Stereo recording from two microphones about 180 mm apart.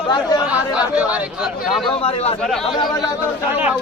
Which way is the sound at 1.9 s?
35° left (ahead or behind).